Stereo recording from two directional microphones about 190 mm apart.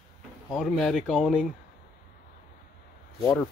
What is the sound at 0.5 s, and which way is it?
Speech, 5° left (ahead or behind).